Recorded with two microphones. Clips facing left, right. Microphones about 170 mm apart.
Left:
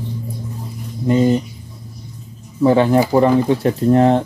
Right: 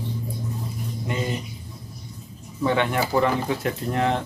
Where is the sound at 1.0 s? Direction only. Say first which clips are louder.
Left 14 dB; 35° left (ahead or behind).